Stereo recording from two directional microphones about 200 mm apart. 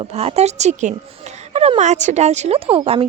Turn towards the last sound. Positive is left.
turn(degrees=-25)  # may be behind; listen again after turning